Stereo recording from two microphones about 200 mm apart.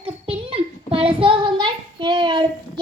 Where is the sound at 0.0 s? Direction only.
30° right (ahead or behind).